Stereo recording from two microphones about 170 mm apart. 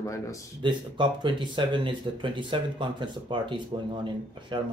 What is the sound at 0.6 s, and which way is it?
Speech, 25° right (ahead or behind).